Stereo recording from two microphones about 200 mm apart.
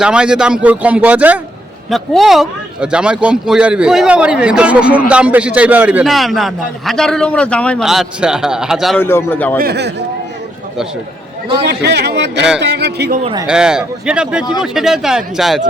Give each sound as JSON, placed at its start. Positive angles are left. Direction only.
{"t": 0.0, "sound": "speech", "side_deg": -5}
{"t": 9.0, "sound": "a man's voice", "side_deg": 10}
{"t": 9.6, "sound": "a man's voice", "side_deg": -55}
{"t": 11.7, "sound": "a man's voice", "side_deg": -55}
{"t": 13.5, "sound": "speech", "side_deg": -5}